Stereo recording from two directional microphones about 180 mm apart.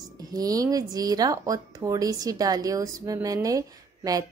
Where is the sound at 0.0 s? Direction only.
20° right (ahead or behind).